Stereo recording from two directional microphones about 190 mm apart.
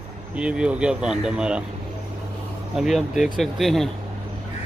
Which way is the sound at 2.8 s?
Centre (ahead or behind).